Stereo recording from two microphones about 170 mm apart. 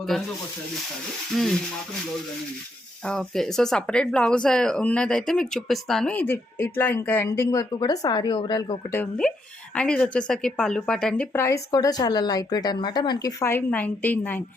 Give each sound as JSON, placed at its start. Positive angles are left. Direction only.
{"t": 0.1, "sound": "speech", "side_deg": 0}
{"t": 1.3, "sound": "speech", "side_deg": 0}
{"t": 3.0, "sound": "a woman's voice", "side_deg": 5}
{"t": 8.9, "sound": "a woman's voice", "side_deg": 10}